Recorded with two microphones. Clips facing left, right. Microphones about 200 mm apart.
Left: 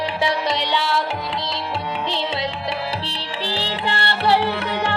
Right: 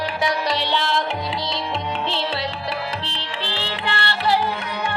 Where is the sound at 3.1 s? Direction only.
35° left (ahead or behind).